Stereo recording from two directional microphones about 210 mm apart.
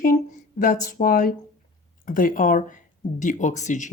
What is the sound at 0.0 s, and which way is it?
Speech, 40° left (ahead or behind).